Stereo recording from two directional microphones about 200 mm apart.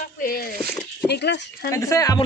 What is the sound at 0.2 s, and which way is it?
Speech, 45° left (ahead or behind).